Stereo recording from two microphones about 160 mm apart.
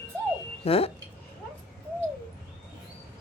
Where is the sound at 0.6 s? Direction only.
40° left (ahead or behind).